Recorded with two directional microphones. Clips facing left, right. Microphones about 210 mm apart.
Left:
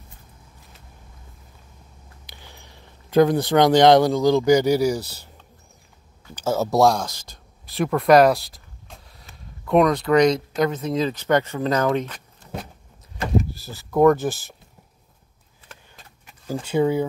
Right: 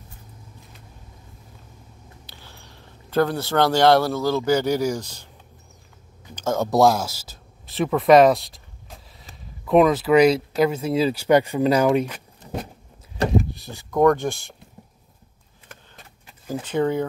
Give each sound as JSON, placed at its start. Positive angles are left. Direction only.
{"t": 2.2, "sound": "speech", "side_deg": 15}
{"t": 6.3, "sound": "speech", "side_deg": 5}
{"t": 13.4, "sound": "speech", "side_deg": 0}
{"t": 16.6, "sound": "speech", "side_deg": 10}